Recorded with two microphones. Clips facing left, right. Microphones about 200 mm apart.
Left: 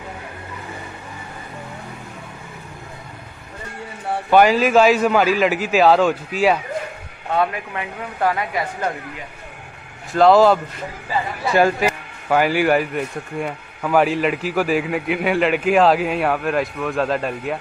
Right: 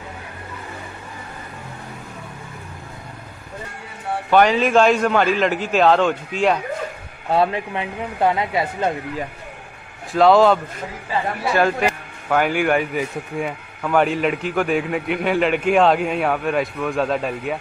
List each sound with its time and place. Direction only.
4.3 s speech: 5° left (ahead or behind)
7.2 s speech: 30° right (ahead or behind)
10.1 s speech: centre (ahead or behind)